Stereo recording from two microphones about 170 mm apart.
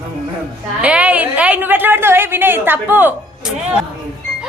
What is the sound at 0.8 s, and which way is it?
A woman's voice, 5° right (ahead or behind).